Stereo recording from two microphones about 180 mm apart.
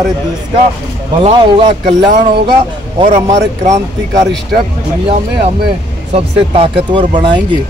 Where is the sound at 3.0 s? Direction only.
40° right (ahead or behind).